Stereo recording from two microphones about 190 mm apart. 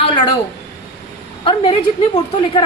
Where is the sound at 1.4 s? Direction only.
25° left (ahead or behind).